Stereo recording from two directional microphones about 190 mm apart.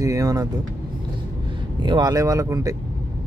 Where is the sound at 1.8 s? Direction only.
20° right (ahead or behind).